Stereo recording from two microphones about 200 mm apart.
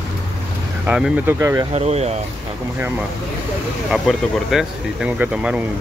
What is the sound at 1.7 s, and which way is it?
Speech, 30° right (ahead or behind).